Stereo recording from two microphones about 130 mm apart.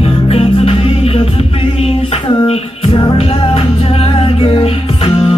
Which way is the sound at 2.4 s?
45° left (ahead or behind).